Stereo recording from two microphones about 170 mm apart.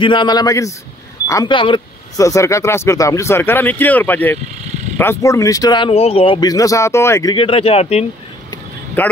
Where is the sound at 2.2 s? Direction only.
15° left (ahead or behind); by 8.0 s 35° left (ahead or behind).